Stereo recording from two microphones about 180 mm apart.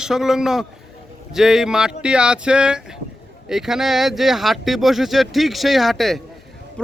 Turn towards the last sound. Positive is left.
turn(degrees=0)  # may be behind; listen again after turning